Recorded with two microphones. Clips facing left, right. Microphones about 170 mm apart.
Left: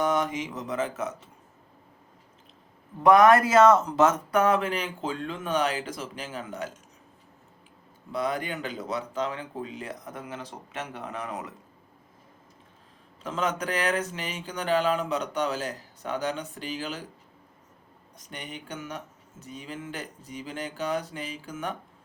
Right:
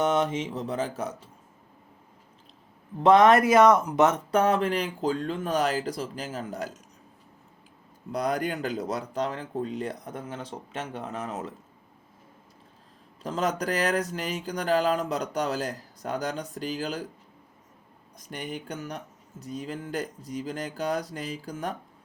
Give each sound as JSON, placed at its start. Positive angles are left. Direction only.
{"t": 0.0, "sound": "speech", "side_deg": -25}
{"t": 3.0, "sound": "speech", "side_deg": -25}
{"t": 8.1, "sound": "speech", "side_deg": -40}
{"t": 13.2, "sound": "speech", "side_deg": -35}
{"t": 18.7, "sound": "speech", "side_deg": -35}